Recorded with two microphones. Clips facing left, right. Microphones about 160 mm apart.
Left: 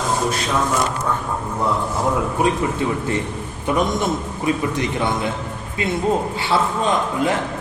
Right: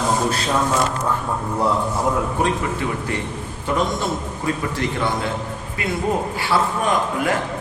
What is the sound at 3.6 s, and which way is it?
A man's voice, 20° left (ahead or behind).